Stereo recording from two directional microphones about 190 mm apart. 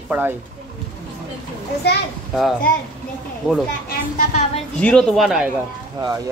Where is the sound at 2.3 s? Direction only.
Centre (ahead or behind).